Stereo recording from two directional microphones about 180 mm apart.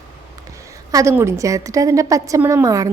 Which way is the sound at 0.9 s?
20° right (ahead or behind).